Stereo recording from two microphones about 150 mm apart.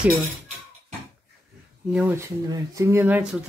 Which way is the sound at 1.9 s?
10° right (ahead or behind).